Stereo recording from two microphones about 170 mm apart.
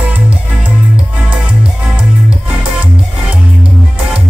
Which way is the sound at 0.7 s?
10° right (ahead or behind).